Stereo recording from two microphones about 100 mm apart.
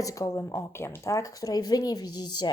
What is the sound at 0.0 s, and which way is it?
A woman's voice, 35° left (ahead or behind).